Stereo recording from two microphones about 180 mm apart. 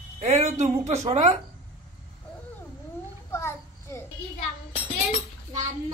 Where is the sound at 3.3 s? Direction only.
15° left (ahead or behind).